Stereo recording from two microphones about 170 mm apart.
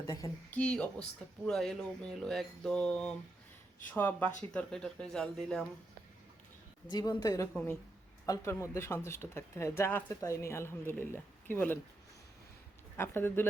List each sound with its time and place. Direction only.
0.0 s speech: 15° left (ahead or behind)
6.9 s a woman's voice: 25° left (ahead or behind)
13.0 s speech: 15° left (ahead or behind)